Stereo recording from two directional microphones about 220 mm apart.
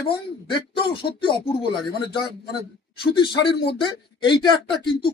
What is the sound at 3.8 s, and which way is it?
Speech, 20° left (ahead or behind).